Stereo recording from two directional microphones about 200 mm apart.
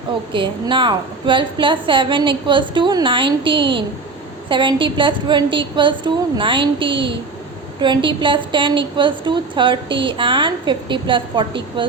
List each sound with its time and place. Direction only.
0.3 s a woman's voice: 25° right (ahead or behind)